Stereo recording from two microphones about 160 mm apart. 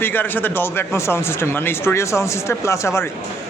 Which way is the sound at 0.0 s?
10° left (ahead or behind).